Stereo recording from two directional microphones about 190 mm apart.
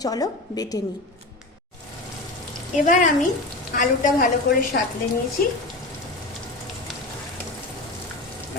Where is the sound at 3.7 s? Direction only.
45° left (ahead or behind).